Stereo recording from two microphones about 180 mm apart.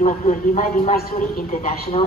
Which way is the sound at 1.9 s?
35° left (ahead or behind).